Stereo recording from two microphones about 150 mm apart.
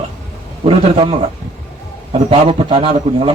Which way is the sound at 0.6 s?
35° right (ahead or behind).